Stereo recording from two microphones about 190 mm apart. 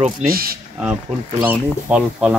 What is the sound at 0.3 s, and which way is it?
Speech, 50° right (ahead or behind).